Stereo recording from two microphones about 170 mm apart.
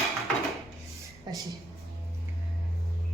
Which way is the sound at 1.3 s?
25° right (ahead or behind).